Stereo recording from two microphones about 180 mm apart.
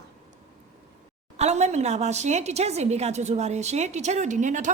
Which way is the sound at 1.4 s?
35° right (ahead or behind).